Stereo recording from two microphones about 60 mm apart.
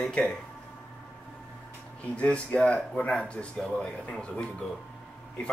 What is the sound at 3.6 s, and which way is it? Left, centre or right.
Speech, centre.